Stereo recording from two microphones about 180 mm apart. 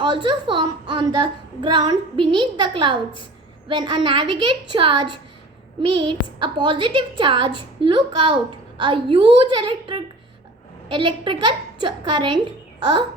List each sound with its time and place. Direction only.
0.0 s a woman's voice: 25° right (ahead or behind)